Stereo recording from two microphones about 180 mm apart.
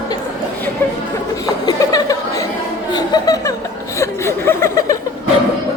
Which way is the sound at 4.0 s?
15° left (ahead or behind).